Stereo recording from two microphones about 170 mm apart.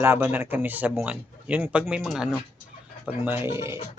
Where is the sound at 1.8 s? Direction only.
Centre (ahead or behind).